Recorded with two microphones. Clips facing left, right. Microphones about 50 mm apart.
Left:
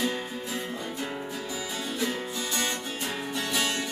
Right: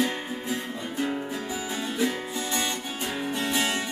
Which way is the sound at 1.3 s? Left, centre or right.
Right.